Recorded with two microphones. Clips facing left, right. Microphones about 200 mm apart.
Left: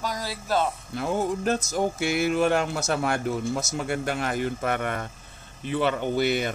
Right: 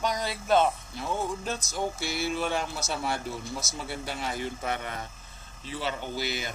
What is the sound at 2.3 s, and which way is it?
A man's voice, 65° left (ahead or behind).